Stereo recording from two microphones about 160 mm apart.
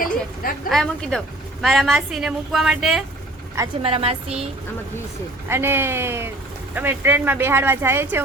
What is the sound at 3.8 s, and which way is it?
Speech, 35° right (ahead or behind).